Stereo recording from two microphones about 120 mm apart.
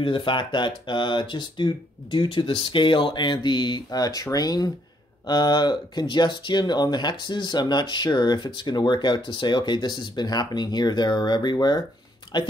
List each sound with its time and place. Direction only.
0.0 s speech: 45° left (ahead or behind)